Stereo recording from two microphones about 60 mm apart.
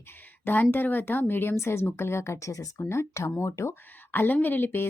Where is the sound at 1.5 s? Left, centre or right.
Left.